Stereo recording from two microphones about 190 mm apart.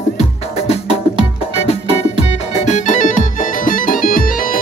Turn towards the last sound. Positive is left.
turn(degrees=45)  # may be behind; listen again after turning